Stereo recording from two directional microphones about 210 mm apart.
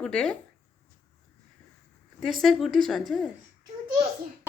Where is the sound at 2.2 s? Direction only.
Centre (ahead or behind).